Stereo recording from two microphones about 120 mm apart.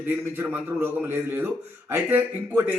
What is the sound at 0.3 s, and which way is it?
A man's voice, 15° right (ahead or behind).